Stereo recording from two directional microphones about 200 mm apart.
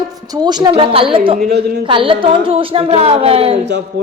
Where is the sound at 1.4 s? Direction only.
55° right (ahead or behind).